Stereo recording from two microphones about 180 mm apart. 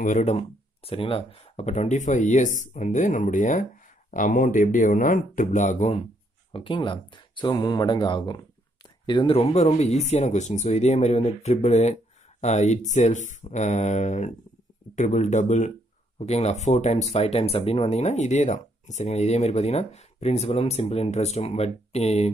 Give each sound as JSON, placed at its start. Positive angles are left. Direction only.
{"t": 0.0, "sound": "speech", "side_deg": 40}
{"t": 6.5, "sound": "speech", "side_deg": 25}